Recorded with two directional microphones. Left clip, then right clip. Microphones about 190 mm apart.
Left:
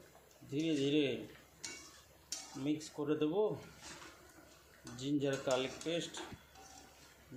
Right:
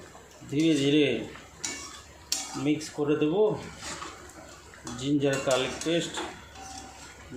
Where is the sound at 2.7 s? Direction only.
20° left (ahead or behind).